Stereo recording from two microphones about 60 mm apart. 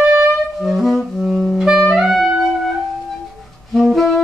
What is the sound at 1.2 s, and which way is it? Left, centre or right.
Saxophone, centre.